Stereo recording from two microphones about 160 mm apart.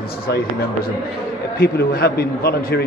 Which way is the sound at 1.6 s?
80° left.